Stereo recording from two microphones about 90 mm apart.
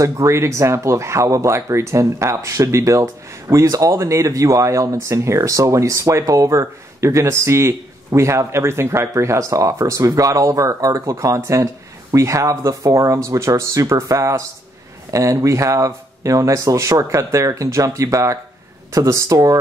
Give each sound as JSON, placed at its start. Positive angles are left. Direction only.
{"t": 0.0, "sound": "speech", "side_deg": -35}